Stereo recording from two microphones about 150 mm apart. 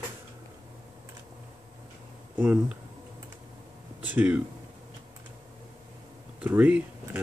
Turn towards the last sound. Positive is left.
turn(degrees=-10)  # may be behind; listen again after turning